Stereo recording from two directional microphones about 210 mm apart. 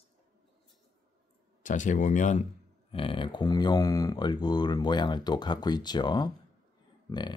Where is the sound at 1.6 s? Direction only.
35° left (ahead or behind).